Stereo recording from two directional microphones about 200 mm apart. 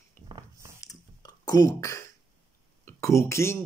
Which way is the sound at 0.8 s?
20° left (ahead or behind).